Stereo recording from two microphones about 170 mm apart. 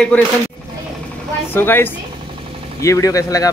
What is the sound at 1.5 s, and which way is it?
A man's voice, 15° left (ahead or behind).